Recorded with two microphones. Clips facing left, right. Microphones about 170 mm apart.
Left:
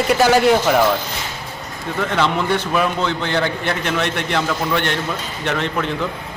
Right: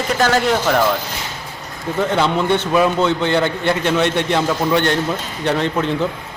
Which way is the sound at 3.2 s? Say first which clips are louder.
Right 3 dB; 25° right (ahead or behind).